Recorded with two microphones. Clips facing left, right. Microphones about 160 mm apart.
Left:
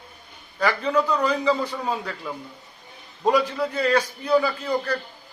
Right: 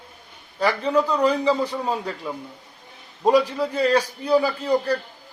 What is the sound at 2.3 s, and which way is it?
Speech, 20° right (ahead or behind).